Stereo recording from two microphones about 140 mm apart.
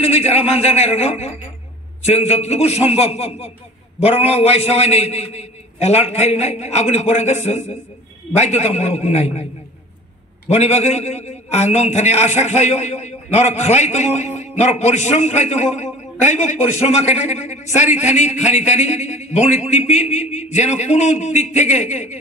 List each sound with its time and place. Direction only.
0.0 s a man's voice: 45° left (ahead or behind)
10.5 s a man's voice: 50° left (ahead or behind)